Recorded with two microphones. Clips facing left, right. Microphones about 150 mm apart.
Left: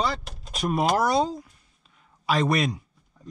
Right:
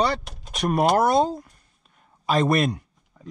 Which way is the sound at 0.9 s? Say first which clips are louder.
Right 3 dB; 50° right (ahead or behind).